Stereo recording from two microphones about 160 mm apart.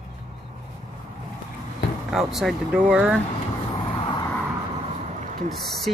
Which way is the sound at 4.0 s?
35° left (ahead or behind).